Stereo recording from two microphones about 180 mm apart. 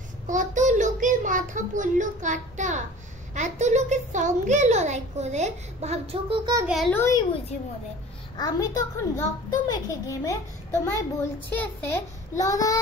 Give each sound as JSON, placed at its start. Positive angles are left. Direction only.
{"t": 0.3, "sound": "a child's voice", "side_deg": -45}
{"t": 6.9, "sound": "a child's voice", "side_deg": 15}
{"t": 8.4, "sound": "a child's voice", "side_deg": 20}